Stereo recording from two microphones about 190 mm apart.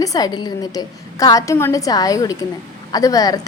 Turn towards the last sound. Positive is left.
turn(degrees=20)  # may be behind; listen again after turning